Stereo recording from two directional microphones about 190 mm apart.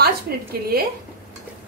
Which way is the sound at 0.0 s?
55° right (ahead or behind).